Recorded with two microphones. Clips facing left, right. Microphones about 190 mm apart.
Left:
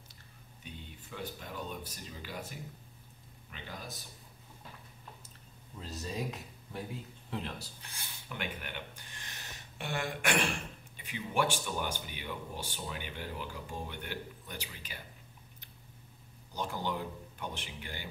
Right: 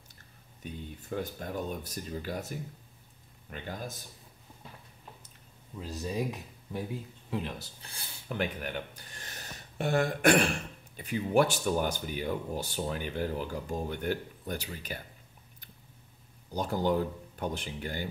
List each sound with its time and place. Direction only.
1.0 s speech: 45° right (ahead or behind)
3.4 s speech: 50° right (ahead or behind)
5.8 s speech: 10° right (ahead or behind)
7.5 s speech: 30° right (ahead or behind)
16.5 s speech: 40° right (ahead or behind)